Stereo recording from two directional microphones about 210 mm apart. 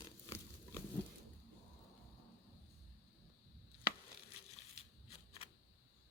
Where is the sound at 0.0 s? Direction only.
10° left (ahead or behind).